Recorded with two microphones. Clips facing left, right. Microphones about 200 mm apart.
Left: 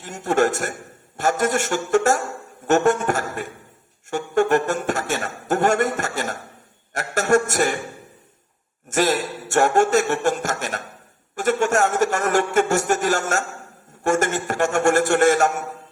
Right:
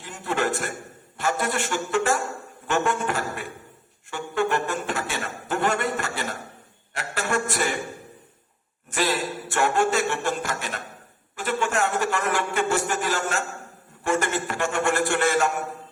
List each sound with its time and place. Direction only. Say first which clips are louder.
0.0 s speech: left 7 dB; 45° left (ahead or behind)
8.9 s speech: left 5 dB; 45° left (ahead or behind)